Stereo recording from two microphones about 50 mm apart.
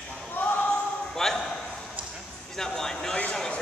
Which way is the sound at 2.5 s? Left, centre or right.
Centre.